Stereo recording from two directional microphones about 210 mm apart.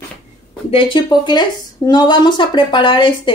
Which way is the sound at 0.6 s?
25° left (ahead or behind).